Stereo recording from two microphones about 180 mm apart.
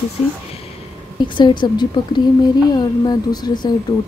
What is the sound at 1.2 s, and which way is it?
Speech, 25° left (ahead or behind).